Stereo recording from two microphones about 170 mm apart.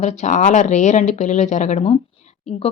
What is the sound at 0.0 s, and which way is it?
Speech, 45° left (ahead or behind).